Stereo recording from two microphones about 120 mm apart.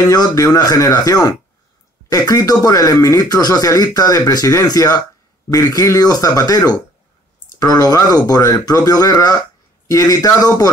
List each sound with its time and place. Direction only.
0.1 s speech: 30° left (ahead or behind)